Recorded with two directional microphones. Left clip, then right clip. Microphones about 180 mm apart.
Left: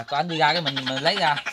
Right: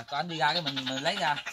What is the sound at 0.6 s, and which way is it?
Speech, 5° left (ahead or behind).